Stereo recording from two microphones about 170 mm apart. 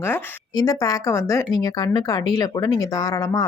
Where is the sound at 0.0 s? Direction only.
10° left (ahead or behind).